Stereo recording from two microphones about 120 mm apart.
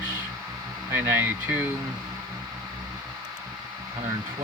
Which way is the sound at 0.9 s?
20° right (ahead or behind).